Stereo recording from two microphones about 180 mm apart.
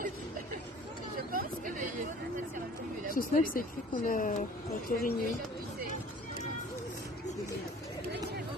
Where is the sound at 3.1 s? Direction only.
50° left (ahead or behind).